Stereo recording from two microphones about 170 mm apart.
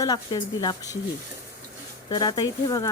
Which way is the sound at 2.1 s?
25° left (ahead or behind).